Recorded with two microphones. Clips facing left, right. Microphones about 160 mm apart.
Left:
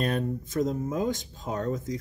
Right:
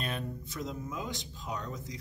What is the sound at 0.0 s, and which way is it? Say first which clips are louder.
Speech: left 9 dB; 45° left (ahead or behind).